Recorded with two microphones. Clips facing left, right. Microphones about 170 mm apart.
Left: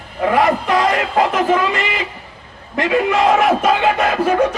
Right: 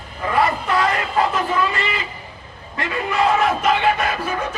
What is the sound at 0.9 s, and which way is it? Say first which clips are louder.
Speech: left 4 dB; 90° left.